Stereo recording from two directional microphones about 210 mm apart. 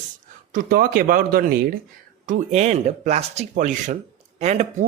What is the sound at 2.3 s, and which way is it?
Speech, 30° right (ahead or behind).